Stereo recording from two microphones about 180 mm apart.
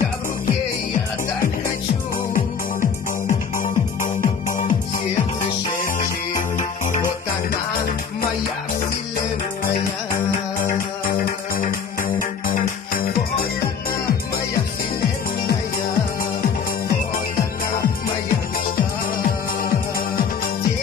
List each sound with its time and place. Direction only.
3.3 s music: 45° left (ahead or behind)
6.5 s music: 45° left (ahead or behind)
11.5 s music: 50° left (ahead or behind)